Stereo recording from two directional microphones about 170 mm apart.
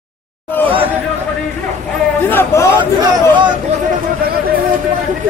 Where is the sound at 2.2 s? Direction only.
10° left (ahead or behind).